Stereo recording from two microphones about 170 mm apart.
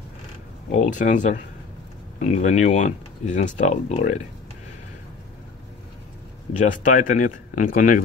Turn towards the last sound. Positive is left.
turn(degrees=55)  # may be behind; listen again after turning